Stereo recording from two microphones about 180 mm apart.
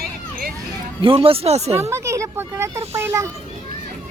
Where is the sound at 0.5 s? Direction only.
30° right (ahead or behind).